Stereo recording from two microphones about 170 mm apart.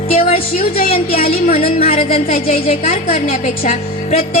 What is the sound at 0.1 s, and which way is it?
Music, 35° left (ahead or behind).